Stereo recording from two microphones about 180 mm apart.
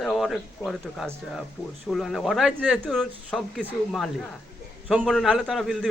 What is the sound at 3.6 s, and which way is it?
Speech, 10° right (ahead or behind).